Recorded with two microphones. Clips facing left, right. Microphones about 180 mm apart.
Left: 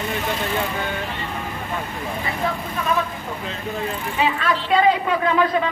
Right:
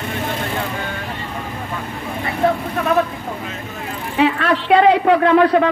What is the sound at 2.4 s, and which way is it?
Vehicle, 65° right (ahead or behind).